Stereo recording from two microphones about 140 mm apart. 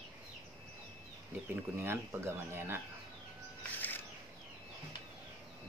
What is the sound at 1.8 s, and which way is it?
Speech, 20° right (ahead or behind).